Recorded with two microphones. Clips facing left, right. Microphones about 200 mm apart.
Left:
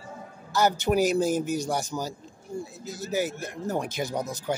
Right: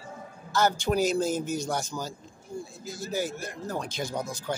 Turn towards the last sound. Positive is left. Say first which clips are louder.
# left 3 dB
turn(degrees=20)  # may be behind; listen again after turning